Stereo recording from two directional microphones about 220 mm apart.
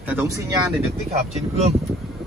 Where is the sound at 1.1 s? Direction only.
30° right (ahead or behind).